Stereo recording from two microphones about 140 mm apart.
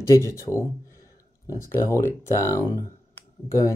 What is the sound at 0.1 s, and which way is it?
Speech, 20° left (ahead or behind).